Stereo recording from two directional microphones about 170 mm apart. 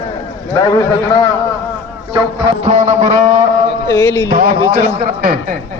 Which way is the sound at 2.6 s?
40° right (ahead or behind).